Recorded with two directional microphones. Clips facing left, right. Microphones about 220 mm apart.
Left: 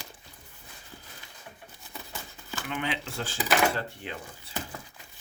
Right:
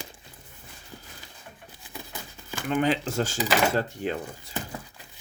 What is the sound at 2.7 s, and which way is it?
Speech, 40° right (ahead or behind).